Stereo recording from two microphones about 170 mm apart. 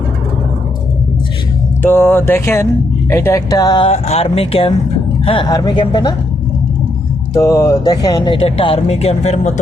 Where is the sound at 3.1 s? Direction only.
15° left (ahead or behind).